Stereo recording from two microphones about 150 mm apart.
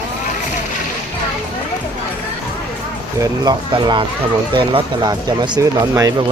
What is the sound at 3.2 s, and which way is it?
Speech, 25° right (ahead or behind).